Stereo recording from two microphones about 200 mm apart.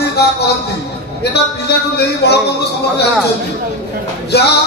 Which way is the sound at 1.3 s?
55° left (ahead or behind).